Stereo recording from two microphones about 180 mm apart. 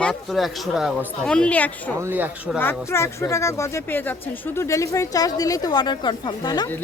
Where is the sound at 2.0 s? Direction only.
10° right (ahead or behind).